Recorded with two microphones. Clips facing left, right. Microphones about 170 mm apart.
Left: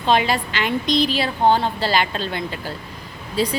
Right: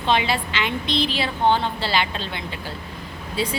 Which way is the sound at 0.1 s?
45° left (ahead or behind).